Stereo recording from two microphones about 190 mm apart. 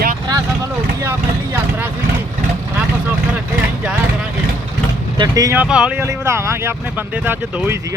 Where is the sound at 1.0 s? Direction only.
15° right (ahead or behind).